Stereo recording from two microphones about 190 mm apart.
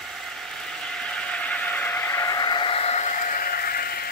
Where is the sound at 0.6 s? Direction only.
5° left (ahead or behind).